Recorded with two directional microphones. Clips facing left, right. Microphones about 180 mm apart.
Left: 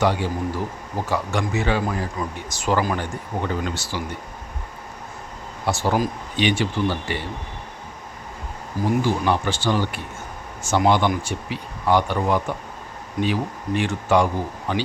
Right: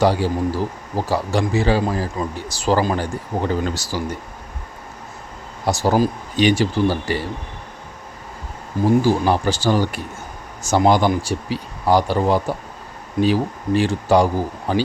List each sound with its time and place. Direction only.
0.0 s speech: 35° right (ahead or behind)
5.6 s speech: 40° right (ahead or behind)
9.0 s speech: 35° right (ahead or behind)